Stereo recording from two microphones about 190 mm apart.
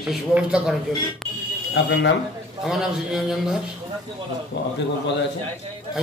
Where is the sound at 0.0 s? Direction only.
5° right (ahead or behind).